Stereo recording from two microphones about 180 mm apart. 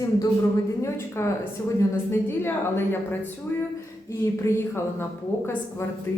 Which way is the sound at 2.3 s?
10° left (ahead or behind).